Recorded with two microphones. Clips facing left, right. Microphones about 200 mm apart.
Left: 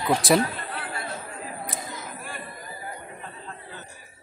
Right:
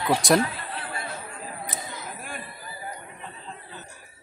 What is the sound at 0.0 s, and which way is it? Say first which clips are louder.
Speech: even; centre (ahead or behind).